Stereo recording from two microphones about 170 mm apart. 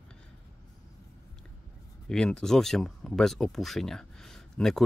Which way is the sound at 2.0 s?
5° left (ahead or behind).